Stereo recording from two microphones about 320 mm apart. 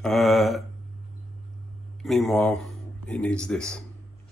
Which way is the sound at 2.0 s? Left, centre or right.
Centre.